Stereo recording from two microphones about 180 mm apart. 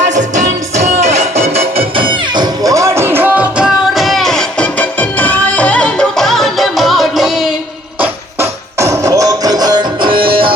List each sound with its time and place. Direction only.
0.1 s music: 40° right (ahead or behind); by 7.5 s centre (ahead or behind)
8.0 s music: 15° right (ahead or behind)